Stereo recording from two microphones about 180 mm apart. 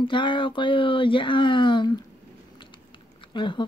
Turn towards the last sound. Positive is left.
turn(degrees=25)  # may be behind; listen again after turning